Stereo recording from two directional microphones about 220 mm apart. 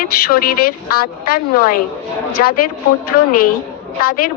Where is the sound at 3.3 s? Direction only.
40° left (ahead or behind).